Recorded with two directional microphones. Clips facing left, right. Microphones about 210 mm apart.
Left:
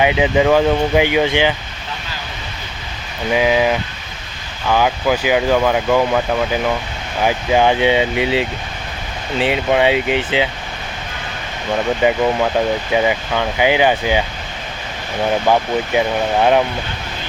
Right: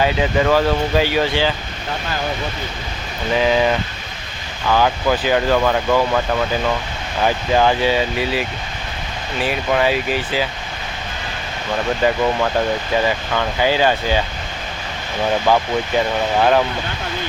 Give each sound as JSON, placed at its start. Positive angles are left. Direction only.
{"t": 0.0, "sound": "speech", "side_deg": 15}
{"t": 3.3, "sound": "speech", "side_deg": 10}
{"t": 12.0, "sound": "speech", "side_deg": 15}
{"t": 15.4, "sound": "speech", "side_deg": 15}